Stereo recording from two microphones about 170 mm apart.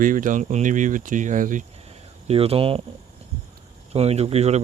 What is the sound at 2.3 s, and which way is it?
Speech, 35° right (ahead or behind).